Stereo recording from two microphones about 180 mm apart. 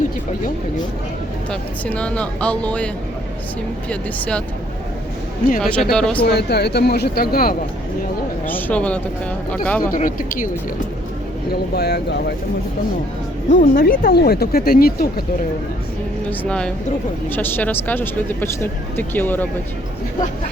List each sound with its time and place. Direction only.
1.5 s speech: 5° left (ahead or behind)
5.5 s speech: 5° left (ahead or behind)
6.2 s speech: 65° left (ahead or behind)
8.4 s speech: 10° left (ahead or behind)
9.9 s speech: 50° left (ahead or behind)
11.7 s speech: 65° left (ahead or behind)
13.5 s speech: 50° left (ahead or behind)
16.4 s speech: 5° left (ahead or behind)